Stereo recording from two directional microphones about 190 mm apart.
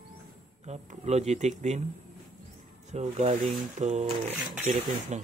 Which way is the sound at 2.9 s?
35° right (ahead or behind).